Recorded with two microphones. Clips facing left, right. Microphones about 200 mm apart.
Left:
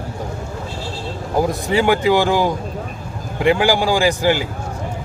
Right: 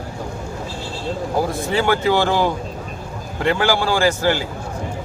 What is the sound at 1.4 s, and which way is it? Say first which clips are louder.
Speech: left 4 dB; 15° left (ahead or behind).